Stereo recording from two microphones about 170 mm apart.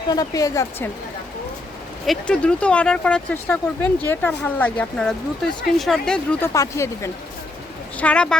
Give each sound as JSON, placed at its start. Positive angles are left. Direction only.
{"t": 0.1, "sound": "speech", "side_deg": 20}
{"t": 2.0, "sound": "speech", "side_deg": 5}
{"t": 6.4, "sound": "speech", "side_deg": 20}